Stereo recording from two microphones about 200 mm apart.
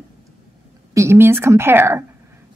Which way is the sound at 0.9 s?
15° right (ahead or behind).